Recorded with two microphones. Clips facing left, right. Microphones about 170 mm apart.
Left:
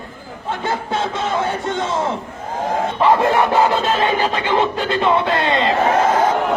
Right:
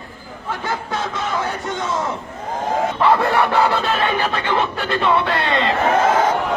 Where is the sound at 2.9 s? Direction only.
20° left (ahead or behind).